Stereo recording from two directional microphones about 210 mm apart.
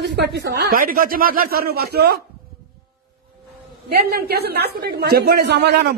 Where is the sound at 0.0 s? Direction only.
55° right (ahead or behind).